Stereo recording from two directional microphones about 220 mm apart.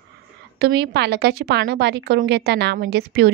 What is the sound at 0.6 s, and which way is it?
A woman's voice, 45° right (ahead or behind).